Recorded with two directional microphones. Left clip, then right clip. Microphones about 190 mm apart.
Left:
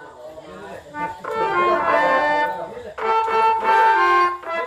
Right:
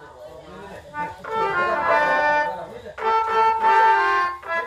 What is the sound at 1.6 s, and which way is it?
Music, 15° left (ahead or behind).